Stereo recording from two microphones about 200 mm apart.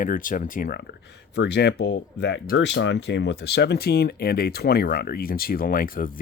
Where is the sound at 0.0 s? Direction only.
45° left (ahead or behind).